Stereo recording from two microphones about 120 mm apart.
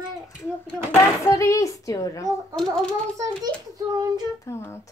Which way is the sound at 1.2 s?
25° left (ahead or behind).